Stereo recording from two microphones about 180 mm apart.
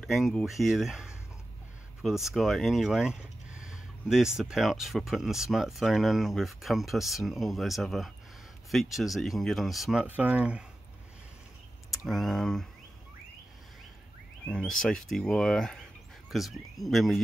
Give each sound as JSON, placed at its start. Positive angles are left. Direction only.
{"t": 0.0, "sound": "speech", "side_deg": 0}
{"t": 11.9, "sound": "speech", "side_deg": 0}
{"t": 14.4, "sound": "speech", "side_deg": 5}